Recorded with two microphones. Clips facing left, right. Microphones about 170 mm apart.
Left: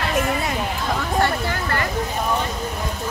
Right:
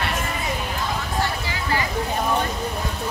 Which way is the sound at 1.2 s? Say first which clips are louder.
Left 5 dB; 55° left (ahead or behind).